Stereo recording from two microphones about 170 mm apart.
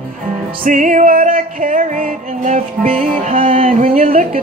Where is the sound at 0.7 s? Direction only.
50° right (ahead or behind).